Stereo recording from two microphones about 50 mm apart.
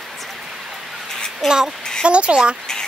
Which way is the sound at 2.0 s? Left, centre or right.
Right.